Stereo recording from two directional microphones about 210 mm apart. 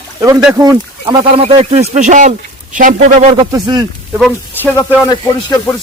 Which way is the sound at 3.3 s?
20° right (ahead or behind).